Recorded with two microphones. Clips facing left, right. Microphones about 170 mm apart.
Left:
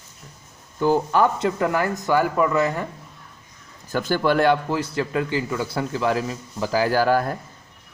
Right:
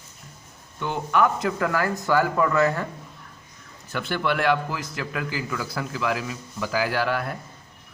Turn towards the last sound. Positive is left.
turn(degrees=40)  # may be behind; listen again after turning